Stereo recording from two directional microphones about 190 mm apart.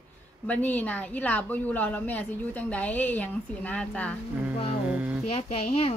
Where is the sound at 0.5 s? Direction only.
10° left (ahead or behind).